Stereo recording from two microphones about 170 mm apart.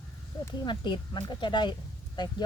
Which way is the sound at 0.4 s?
25° left (ahead or behind).